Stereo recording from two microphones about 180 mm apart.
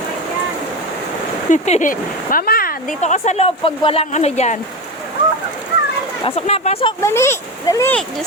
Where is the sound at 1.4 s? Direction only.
40° left (ahead or behind).